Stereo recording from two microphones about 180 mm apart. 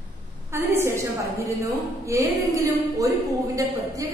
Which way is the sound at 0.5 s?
15° right (ahead or behind).